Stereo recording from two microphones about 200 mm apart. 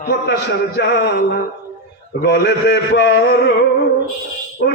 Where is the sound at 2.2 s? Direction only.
60° left (ahead or behind).